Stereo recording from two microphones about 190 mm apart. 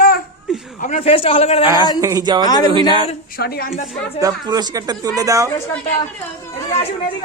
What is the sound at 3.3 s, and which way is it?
Speech, 55° left (ahead or behind).